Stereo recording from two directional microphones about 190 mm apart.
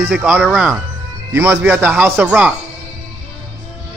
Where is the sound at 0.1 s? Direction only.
5° right (ahead or behind).